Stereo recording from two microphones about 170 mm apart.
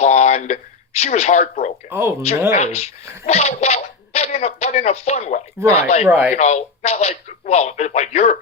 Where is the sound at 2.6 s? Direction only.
40° left (ahead or behind).